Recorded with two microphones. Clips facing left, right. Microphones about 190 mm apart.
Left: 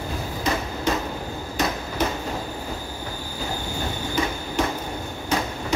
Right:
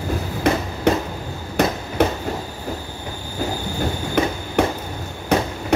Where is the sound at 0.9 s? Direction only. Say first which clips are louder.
Right 7 dB; 65° right (ahead or behind).